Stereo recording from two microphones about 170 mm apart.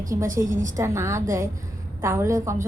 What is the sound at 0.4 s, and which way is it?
Speech, 50° right (ahead or behind).